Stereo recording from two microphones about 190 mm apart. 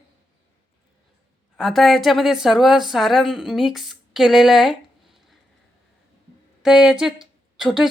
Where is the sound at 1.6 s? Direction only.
Centre (ahead or behind).